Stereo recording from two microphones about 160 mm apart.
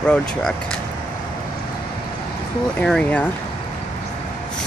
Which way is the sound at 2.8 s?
5° left (ahead or behind).